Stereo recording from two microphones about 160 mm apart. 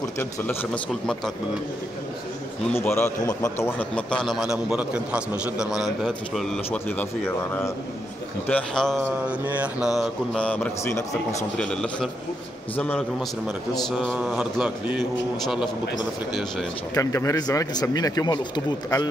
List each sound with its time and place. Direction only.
0.2 s a man's voice: 15° left (ahead or behind)
2.8 s a man's voice: 15° left (ahead or behind)
8.5 s a man's voice: 5° left (ahead or behind)
9.3 s a man's voice: 10° right (ahead or behind); by 13.0 s 10° left (ahead or behind)
13.8 s a man's voice: centre (ahead or behind)
16.9 s speech: 20° left (ahead or behind)